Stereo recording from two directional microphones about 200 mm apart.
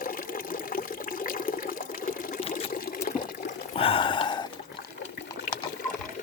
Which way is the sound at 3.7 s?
30° left (ahead or behind).